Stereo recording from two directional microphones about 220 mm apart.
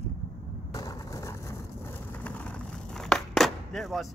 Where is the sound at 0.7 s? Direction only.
15° left (ahead or behind).